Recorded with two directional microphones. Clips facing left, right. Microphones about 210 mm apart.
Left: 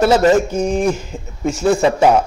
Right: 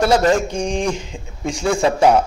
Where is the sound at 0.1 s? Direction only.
5° left (ahead or behind).